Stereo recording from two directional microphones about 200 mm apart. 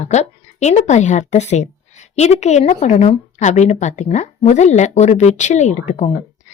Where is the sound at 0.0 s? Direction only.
35° left (ahead or behind).